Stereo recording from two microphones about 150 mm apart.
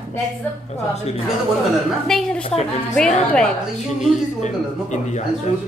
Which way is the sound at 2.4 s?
40° left (ahead or behind).